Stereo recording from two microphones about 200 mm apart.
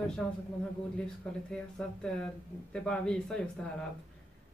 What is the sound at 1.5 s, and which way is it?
Speech, 5° left (ahead or behind).